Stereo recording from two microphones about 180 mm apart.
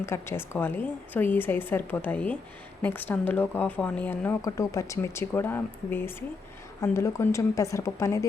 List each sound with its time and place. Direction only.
0.0 s speech: 15° left (ahead or behind)